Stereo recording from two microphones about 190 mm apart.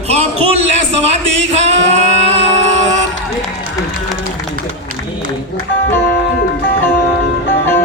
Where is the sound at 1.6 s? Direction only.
35° right (ahead or behind).